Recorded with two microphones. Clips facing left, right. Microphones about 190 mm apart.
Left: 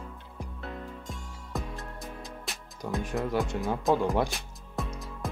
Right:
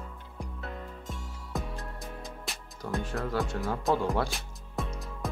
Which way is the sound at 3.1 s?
15° left (ahead or behind).